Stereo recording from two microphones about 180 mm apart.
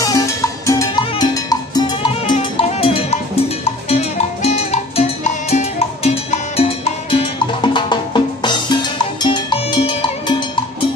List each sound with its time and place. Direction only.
0.0 s music: 20° left (ahead or behind)
2.3 s cowbell: 30° left (ahead or behind)
5.5 s music: 35° left (ahead or behind)